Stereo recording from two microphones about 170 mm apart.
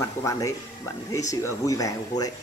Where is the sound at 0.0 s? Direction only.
20° left (ahead or behind).